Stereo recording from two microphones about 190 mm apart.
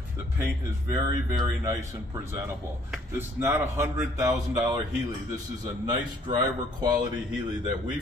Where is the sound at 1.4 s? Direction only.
15° right (ahead or behind).